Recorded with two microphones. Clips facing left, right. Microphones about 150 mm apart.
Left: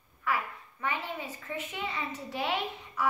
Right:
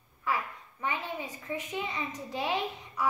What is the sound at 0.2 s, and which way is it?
A child's voice, 15° right (ahead or behind).